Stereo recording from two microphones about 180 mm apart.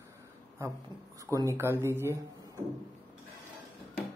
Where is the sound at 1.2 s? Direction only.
20° right (ahead or behind).